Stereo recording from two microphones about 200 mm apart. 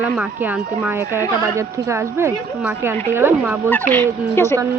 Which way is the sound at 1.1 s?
15° right (ahead or behind).